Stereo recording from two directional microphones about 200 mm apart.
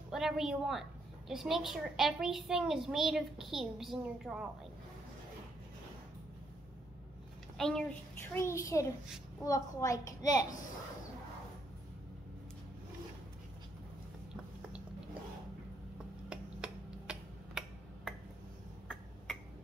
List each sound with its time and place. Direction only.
0.1 s a child's voice: centre (ahead or behind)
7.5 s a child's voice: 5° left (ahead or behind)
16.3 s tick-tock: 5° right (ahead or behind)